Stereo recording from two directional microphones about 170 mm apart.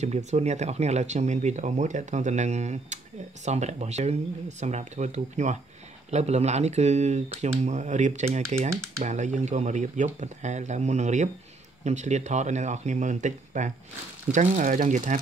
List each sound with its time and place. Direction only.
0.0 s speech: 40° right (ahead or behind)